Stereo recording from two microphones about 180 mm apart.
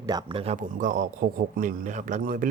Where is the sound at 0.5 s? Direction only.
45° right (ahead or behind).